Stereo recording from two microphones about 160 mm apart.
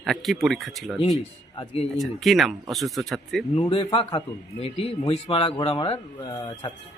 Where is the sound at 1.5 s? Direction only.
40° left (ahead or behind).